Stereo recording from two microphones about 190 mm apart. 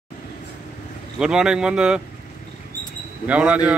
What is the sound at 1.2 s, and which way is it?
Speech, 5° right (ahead or behind).